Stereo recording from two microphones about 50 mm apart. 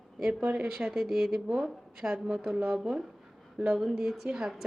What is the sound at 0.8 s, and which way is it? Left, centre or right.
A woman's voice, centre.